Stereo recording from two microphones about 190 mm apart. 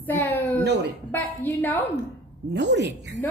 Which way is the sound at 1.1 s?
10° left (ahead or behind).